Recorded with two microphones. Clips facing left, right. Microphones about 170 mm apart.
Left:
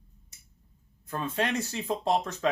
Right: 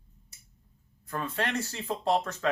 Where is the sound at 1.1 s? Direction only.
20° left (ahead or behind).